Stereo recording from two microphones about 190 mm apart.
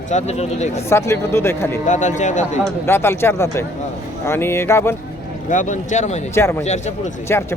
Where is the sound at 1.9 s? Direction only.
40° left (ahead or behind).